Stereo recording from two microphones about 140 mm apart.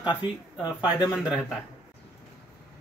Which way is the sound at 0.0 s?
30° left (ahead or behind).